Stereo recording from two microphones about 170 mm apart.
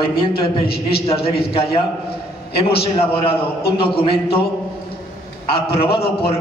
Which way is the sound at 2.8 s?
35° left (ahead or behind).